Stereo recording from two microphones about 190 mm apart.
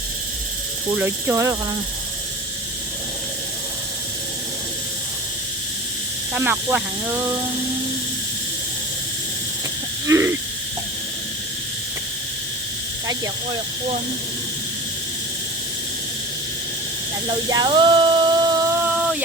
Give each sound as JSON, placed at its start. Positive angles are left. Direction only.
{"t": 0.9, "sound": "speech", "side_deg": -10}
{"t": 6.3, "sound": "speech", "side_deg": -10}
{"t": 10.1, "sound": "speech", "side_deg": -15}
{"t": 17.2, "sound": "a sound", "side_deg": -25}